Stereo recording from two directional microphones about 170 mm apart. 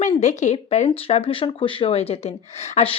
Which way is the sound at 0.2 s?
45° left (ahead or behind).